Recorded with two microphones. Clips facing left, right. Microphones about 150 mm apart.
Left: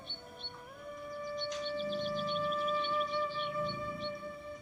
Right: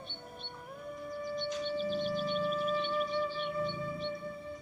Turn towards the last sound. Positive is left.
turn(degrees=-30)  # may be behind; listen again after turning